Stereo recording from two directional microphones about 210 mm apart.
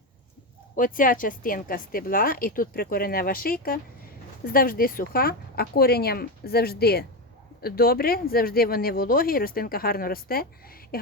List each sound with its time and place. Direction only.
0.8 s speech: 40° left (ahead or behind)